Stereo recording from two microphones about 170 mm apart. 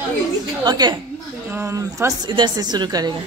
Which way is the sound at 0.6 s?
25° right (ahead or behind).